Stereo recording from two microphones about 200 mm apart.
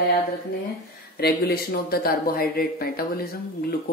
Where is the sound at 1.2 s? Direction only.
50° left (ahead or behind).